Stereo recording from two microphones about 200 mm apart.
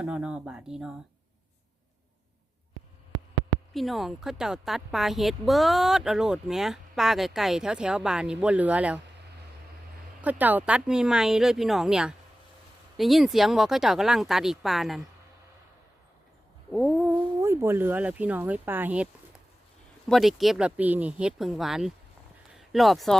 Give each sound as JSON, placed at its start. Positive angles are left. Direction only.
{"t": 0.0, "sound": "a woman's voice", "side_deg": -5}
{"t": 3.8, "sound": "a woman's voice", "side_deg": 0}
{"t": 10.2, "sound": "a woman's voice", "side_deg": -10}
{"t": 16.7, "sound": "speech", "side_deg": 0}
{"t": 20.1, "sound": "a woman's voice", "side_deg": 0}